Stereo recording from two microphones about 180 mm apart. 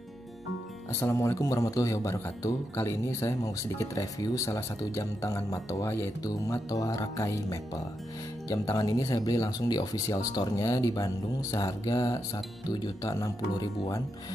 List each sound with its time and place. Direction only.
0.9 s speech: 15° left (ahead or behind)